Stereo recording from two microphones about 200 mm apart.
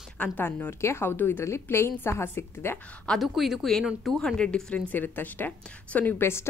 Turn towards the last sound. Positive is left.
turn(degrees=10)  # may be behind; listen again after turning